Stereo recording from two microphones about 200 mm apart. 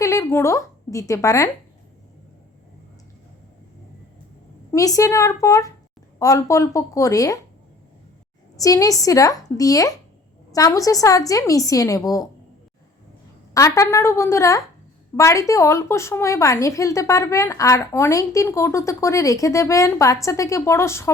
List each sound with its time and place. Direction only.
0.0 s a woman's voice: 15° left (ahead or behind)
4.7 s a woman's voice: 15° left (ahead or behind)
8.5 s a woman's voice: 15° left (ahead or behind)
13.5 s a woman's voice: 15° left (ahead or behind)